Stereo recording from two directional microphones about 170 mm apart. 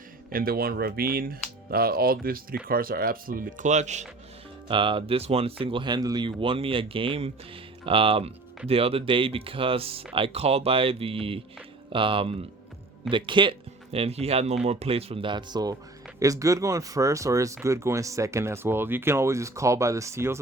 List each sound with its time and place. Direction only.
0.3 s speech: 60° right (ahead or behind); by 4.0 s 45° right (ahead or behind)
4.7 s speech: 30° right (ahead or behind)